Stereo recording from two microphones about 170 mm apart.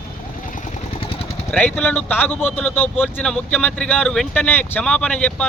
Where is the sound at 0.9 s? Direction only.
35° left (ahead or behind).